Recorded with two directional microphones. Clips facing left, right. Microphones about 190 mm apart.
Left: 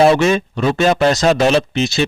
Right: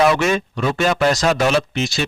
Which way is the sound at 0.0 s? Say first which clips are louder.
Left 4 dB; 30° left (ahead or behind).